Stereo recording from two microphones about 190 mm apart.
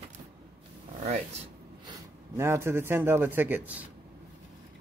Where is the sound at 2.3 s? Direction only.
15° right (ahead or behind).